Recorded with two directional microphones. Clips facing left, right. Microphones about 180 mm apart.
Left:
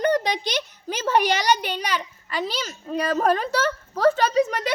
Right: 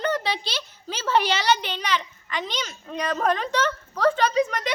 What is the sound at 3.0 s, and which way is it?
A woman's voice, 35° left (ahead or behind).